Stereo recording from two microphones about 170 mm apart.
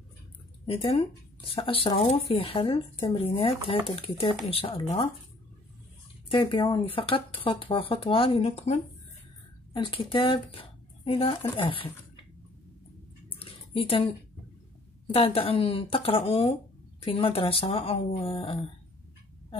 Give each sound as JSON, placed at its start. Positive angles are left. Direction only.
{"t": 0.7, "sound": "speech", "side_deg": 35}
{"t": 6.2, "sound": "speech", "side_deg": 30}
{"t": 9.8, "sound": "speech", "side_deg": 30}
{"t": 13.4, "sound": "a sound", "side_deg": 35}
{"t": 15.1, "sound": "speech", "side_deg": 35}